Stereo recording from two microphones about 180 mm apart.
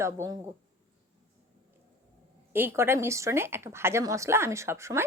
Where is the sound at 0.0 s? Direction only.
15° right (ahead or behind).